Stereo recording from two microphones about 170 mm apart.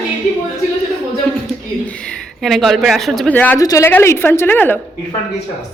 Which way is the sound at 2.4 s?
Centre (ahead or behind).